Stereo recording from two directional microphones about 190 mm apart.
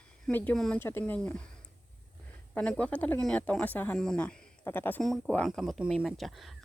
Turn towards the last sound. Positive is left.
turn(degrees=0)  # may be behind; listen again after turning